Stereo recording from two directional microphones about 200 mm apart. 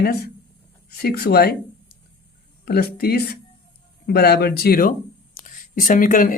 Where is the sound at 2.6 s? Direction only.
50° left (ahead or behind).